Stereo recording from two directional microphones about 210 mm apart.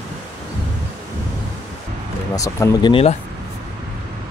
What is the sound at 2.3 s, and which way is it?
Speech, 15° left (ahead or behind).